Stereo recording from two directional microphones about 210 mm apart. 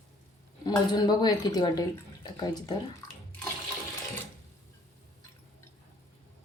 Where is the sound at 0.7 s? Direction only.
20° left (ahead or behind).